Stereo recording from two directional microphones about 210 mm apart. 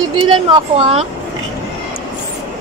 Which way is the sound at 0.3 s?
25° right (ahead or behind).